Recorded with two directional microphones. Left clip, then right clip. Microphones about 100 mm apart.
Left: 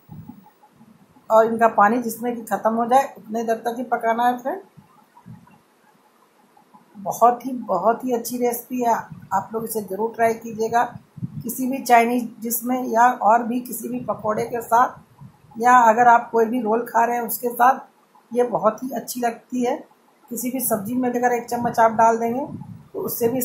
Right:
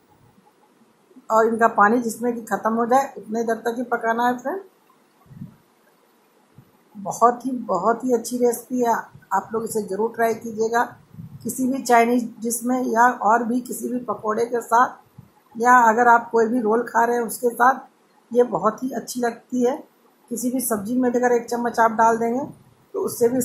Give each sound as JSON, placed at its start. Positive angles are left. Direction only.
{"t": 1.2, "sound": "speech", "side_deg": 15}
{"t": 7.0, "sound": "speech", "side_deg": 15}